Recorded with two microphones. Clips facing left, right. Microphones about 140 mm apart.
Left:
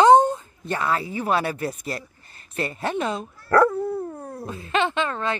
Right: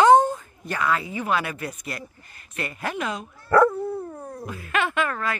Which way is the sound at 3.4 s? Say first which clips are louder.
Even; centre (ahead or behind).